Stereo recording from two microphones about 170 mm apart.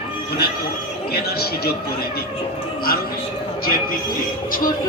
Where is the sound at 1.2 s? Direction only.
65° left (ahead or behind).